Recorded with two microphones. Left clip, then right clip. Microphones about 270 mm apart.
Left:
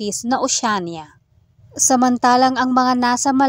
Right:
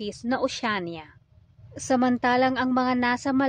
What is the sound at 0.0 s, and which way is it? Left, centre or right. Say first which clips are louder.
Speech: left 7 dB; left.